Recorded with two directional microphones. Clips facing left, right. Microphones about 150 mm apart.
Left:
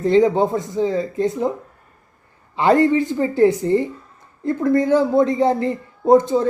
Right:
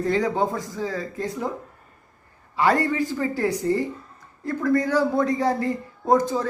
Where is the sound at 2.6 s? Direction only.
25° left (ahead or behind).